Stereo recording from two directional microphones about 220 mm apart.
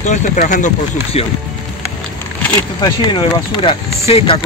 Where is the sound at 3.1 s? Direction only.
25° left (ahead or behind).